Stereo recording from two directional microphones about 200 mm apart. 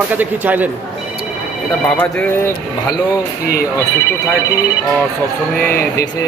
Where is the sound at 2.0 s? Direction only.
10° left (ahead or behind).